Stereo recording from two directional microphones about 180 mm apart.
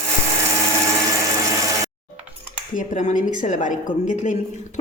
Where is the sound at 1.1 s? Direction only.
20° right (ahead or behind).